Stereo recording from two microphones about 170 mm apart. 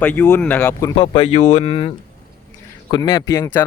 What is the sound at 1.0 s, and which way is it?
Speech, 35° left (ahead or behind).